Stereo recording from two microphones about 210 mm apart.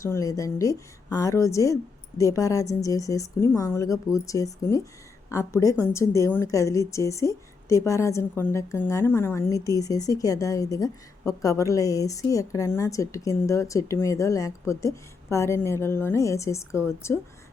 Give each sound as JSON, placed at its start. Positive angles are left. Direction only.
{"t": 0.0, "sound": "a woman's voice", "side_deg": 15}